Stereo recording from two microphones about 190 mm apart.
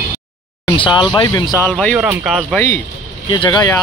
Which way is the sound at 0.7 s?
25° left (ahead or behind).